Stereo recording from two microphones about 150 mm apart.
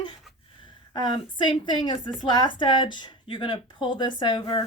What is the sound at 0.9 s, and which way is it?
A woman's voice, 30° left (ahead or behind).